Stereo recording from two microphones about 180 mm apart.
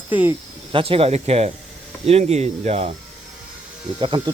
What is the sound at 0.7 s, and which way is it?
Speech, 30° right (ahead or behind).